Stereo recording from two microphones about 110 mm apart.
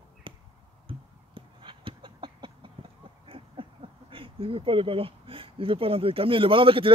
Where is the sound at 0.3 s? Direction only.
50° right (ahead or behind).